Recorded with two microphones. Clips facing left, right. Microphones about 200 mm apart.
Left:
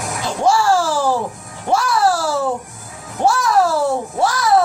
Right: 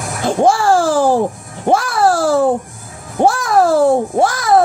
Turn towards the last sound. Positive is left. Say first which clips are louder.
# right 3 dB
turn(degrees=-50)  # may be behind; listen again after turning